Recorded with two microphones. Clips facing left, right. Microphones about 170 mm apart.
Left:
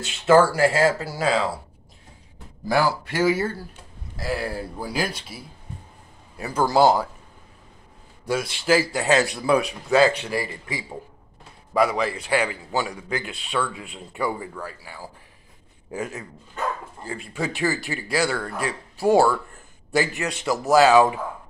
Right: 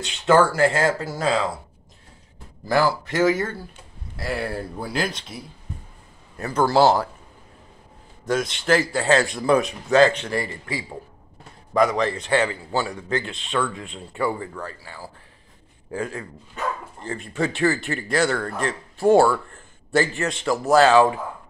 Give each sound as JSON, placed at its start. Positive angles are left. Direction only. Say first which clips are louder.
{"t": 0.0, "sound": "a man's voice", "louder": "left 1 dB", "side_deg": 5}
{"t": 2.7, "sound": "a man's voice", "louder": "right 1 dB", "side_deg": 10}
{"t": 8.3, "sound": "a man's voice", "louder": "right 1 dB", "side_deg": 10}